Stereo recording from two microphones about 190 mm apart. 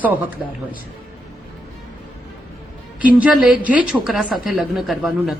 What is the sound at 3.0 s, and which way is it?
A woman's voice, 5° right (ahead or behind).